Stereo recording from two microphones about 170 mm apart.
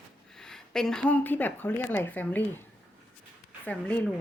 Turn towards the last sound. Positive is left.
turn(degrees=10)  # may be behind; listen again after turning